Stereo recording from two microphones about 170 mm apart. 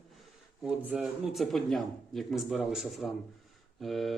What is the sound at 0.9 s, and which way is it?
Speech, 5° right (ahead or behind).